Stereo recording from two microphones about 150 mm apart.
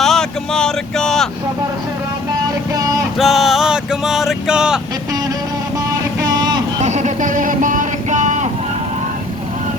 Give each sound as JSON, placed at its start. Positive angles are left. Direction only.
{"t": 0.0, "sound": "speech", "side_deg": 5}
{"t": 3.2, "sound": "vehicle", "side_deg": 0}
{"t": 6.2, "sound": "vehicle", "side_deg": -30}
{"t": 6.8, "sound": "a sound", "side_deg": -50}